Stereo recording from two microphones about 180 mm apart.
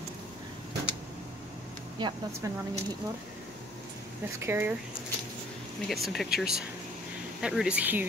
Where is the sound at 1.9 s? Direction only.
20° right (ahead or behind).